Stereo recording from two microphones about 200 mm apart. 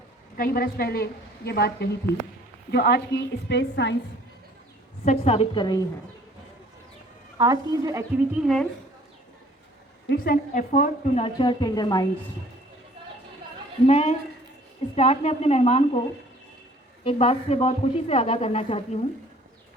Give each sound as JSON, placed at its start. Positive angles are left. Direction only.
{"t": 0.3, "sound": "a woman's voice", "side_deg": 45}
{"t": 5.0, "sound": "a woman's voice", "side_deg": 30}
{"t": 7.3, "sound": "a woman's voice", "side_deg": -20}
{"t": 8.4, "sound": "a woman's voice", "side_deg": 0}
{"t": 10.1, "sound": "a woman's voice", "side_deg": 50}
{"t": 11.2, "sound": "a woman's voice", "side_deg": 20}
{"t": 13.8, "sound": "a woman's voice", "side_deg": 30}